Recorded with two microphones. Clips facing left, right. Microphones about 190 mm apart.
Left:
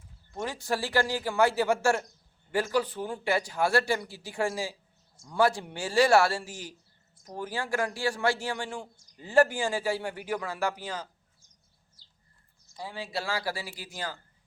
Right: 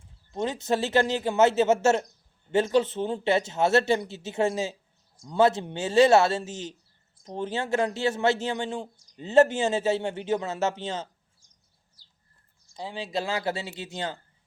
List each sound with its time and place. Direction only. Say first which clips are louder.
0.3 s speech: right 5 dB; 20° right (ahead or behind)
12.7 s speech: right 4 dB; 20° right (ahead or behind)